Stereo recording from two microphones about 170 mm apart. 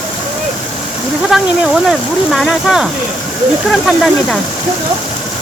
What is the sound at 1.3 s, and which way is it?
Speech, 5° right (ahead or behind).